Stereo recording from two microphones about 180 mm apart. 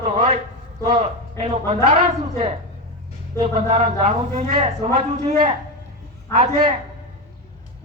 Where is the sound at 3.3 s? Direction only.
35° right (ahead or behind).